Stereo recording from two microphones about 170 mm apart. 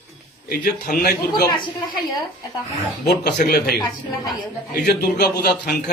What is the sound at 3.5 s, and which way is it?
Speech, 65° left (ahead or behind).